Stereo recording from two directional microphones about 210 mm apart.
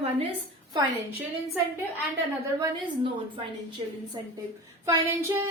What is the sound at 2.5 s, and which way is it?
A woman's voice, 20° right (ahead or behind).